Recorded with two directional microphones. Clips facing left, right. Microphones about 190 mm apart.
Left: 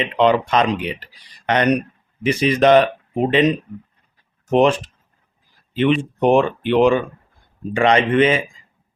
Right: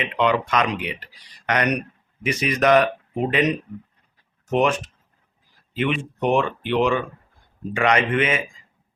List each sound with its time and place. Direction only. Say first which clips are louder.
0.0 s speech: left 5 dB; 30° left (ahead or behind)